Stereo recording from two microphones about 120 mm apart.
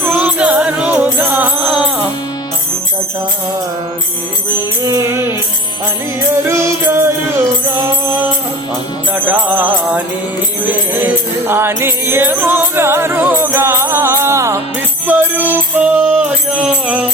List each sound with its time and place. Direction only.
0.2 s music: 10° right (ahead or behind)
4.8 s music: 25° right (ahead or behind)
6.5 s music: 25° right (ahead or behind)
9.1 s music: 15° right (ahead or behind)